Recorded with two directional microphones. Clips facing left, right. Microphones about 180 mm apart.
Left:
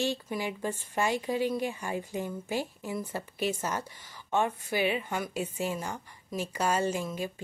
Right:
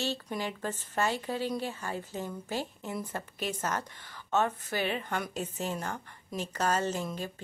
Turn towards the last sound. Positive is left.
turn(degrees=10)  # may be behind; listen again after turning